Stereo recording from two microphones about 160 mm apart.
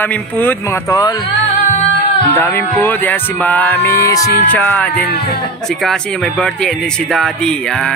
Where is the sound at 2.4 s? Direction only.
10° left (ahead or behind).